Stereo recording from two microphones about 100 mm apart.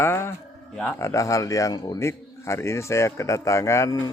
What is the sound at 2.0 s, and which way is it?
A man's voice, 30° left (ahead or behind).